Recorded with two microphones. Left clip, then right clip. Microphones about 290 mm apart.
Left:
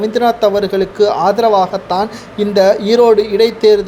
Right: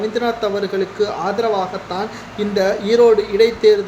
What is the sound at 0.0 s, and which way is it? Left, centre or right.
Speech, left.